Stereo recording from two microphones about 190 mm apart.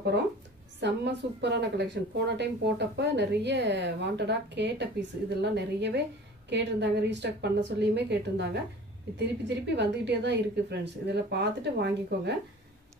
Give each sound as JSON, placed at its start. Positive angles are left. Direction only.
{"t": 0.1, "sound": "a woman's voice", "side_deg": -65}